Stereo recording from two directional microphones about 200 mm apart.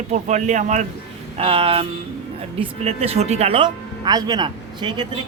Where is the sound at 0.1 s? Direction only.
35° right (ahead or behind).